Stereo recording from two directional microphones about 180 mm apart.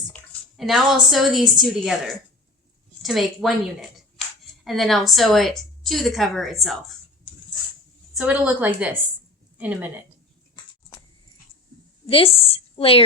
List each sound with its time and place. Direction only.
0.5 s a woman's voice: centre (ahead or behind)
3.0 s a woman's voice: centre (ahead or behind)
8.1 s a woman's voice: 5° right (ahead or behind)
10.5 s a sound: 20° left (ahead or behind)
12.0 s a woman's voice: 30° left (ahead or behind)